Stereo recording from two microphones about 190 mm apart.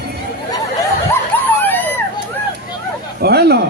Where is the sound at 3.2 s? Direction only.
60° right (ahead or behind).